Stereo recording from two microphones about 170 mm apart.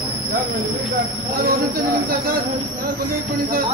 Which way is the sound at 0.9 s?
60° right (ahead or behind).